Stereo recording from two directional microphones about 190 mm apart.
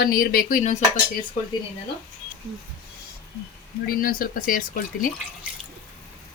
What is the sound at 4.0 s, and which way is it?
Speech, 50° left (ahead or behind).